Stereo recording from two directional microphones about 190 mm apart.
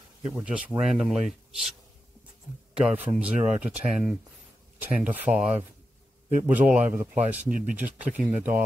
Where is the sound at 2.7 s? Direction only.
5° right (ahead or behind).